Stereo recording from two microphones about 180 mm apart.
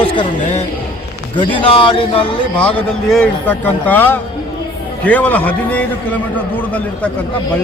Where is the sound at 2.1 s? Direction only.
5° left (ahead or behind).